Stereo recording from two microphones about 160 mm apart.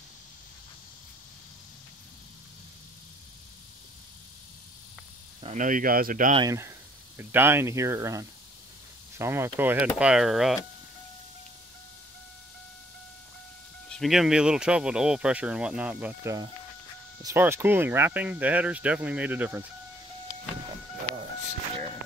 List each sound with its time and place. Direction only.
5.4 s speech: 50° right (ahead or behind)
6.3 s speech: 25° right (ahead or behind); by 10.6 s centre (ahead or behind)
13.8 s speech: centre (ahead or behind)
21.1 s a sound: 30° left (ahead or behind)